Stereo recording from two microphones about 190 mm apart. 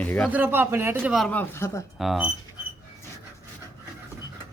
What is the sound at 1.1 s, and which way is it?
Speech, 5° left (ahead or behind).